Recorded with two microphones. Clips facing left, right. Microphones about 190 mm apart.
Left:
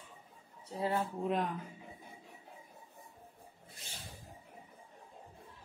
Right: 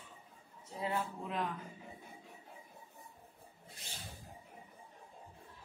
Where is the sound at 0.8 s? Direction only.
35° left (ahead or behind).